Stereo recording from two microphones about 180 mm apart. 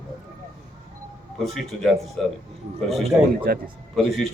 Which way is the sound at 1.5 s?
Centre (ahead or behind).